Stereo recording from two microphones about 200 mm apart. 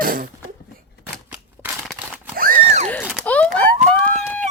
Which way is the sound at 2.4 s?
40° right (ahead or behind).